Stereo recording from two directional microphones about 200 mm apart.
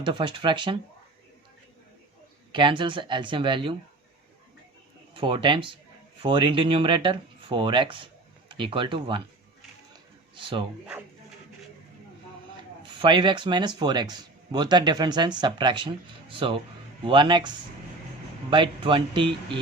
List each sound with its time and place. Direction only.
0.0 s speech: 25° right (ahead or behind)
2.5 s speech: 25° right (ahead or behind)
5.1 s speech: 25° right (ahead or behind)
10.3 s speech: 25° right (ahead or behind)
12.8 s speech: 25° right (ahead or behind)
18.5 s speech: 25° right (ahead or behind)